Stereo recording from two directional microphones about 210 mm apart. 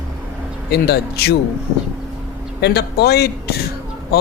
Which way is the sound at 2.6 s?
50° left (ahead or behind).